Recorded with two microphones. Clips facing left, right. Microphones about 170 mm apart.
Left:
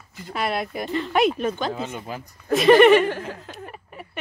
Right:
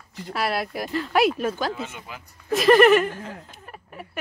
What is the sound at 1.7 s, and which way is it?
Speech, 45° left (ahead or behind).